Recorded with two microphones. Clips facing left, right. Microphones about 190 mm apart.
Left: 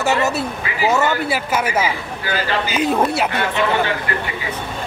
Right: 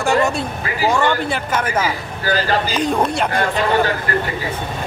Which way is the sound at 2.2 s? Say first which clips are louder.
Right 3 dB; 40° right (ahead or behind).